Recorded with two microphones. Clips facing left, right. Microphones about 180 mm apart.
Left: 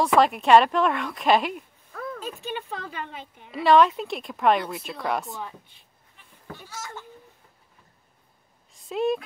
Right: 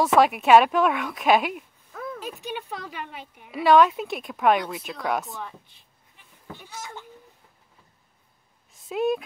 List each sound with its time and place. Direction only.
0.0 s speech: centre (ahead or behind)
6.4 s speech: 15° right (ahead or behind)
8.7 s speech: centre (ahead or behind)